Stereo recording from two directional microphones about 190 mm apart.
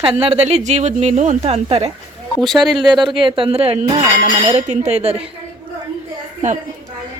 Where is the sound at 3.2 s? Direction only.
25° right (ahead or behind).